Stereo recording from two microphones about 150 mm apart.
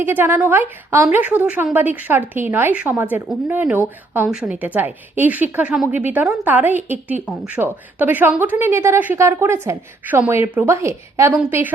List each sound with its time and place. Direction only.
0.0 s a woman's voice: 15° right (ahead or behind)